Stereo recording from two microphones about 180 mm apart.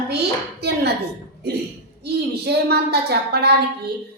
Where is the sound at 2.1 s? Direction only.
65° right (ahead or behind).